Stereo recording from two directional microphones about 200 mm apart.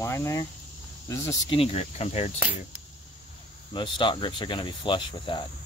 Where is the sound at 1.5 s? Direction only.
30° left (ahead or behind).